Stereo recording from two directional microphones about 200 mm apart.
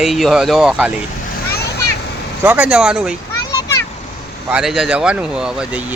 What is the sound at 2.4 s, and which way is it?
Speech, 10° right (ahead or behind).